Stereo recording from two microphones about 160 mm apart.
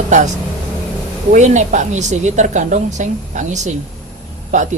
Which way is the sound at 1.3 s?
50° right (ahead or behind).